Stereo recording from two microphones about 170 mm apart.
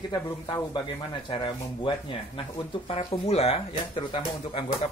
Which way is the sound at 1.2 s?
30° left (ahead or behind).